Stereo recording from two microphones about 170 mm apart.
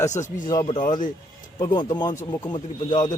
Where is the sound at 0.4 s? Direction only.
20° left (ahead or behind).